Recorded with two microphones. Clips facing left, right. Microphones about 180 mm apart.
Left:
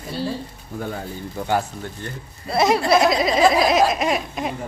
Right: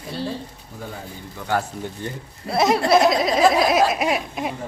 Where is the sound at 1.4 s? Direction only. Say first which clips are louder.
Left 5 dB; 40° left (ahead or behind).